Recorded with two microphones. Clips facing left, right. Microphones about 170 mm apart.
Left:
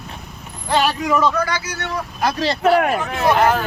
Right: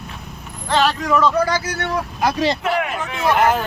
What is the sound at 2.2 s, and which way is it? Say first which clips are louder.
Speech: right 1 dB; 15° right (ahead or behind).